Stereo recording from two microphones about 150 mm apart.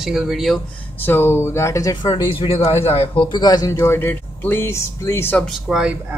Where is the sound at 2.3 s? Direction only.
40° left (ahead or behind); by 5.4 s 15° left (ahead or behind).